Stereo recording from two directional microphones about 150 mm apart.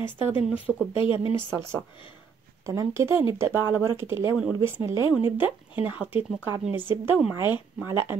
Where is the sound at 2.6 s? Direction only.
20° right (ahead or behind).